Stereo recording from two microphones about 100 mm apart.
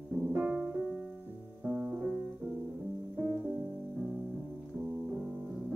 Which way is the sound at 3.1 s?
15° right (ahead or behind).